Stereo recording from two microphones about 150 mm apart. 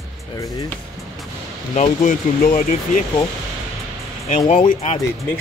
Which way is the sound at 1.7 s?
55° left (ahead or behind).